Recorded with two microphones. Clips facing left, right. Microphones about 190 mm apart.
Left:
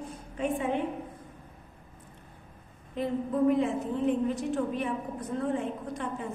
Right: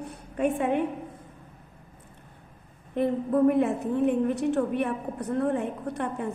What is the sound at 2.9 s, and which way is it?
A woman's voice, 60° right (ahead or behind).